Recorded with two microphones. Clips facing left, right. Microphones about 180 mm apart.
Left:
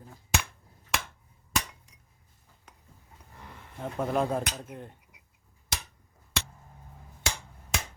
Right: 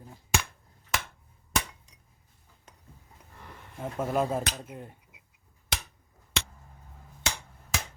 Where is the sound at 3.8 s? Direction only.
5° right (ahead or behind).